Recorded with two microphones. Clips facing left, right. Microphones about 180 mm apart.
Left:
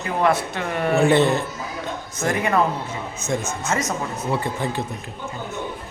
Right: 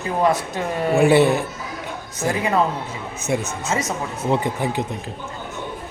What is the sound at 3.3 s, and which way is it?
Speech, 10° right (ahead or behind).